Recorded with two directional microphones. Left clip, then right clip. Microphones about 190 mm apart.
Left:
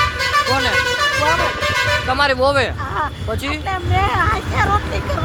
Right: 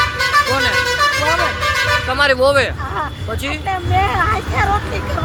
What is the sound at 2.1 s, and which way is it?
Speech, 20° left (ahead or behind).